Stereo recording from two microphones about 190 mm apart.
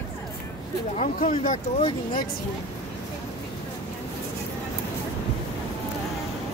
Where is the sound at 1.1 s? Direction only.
45° left (ahead or behind).